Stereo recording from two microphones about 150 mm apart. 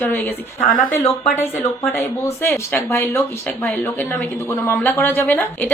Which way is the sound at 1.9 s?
15° left (ahead or behind).